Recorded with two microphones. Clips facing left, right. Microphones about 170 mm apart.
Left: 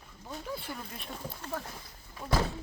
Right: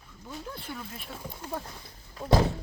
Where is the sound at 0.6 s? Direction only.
Centre (ahead or behind).